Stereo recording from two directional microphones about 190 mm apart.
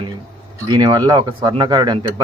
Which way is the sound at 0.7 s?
20° right (ahead or behind).